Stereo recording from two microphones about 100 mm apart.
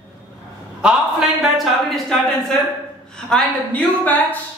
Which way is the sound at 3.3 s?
15° left (ahead or behind).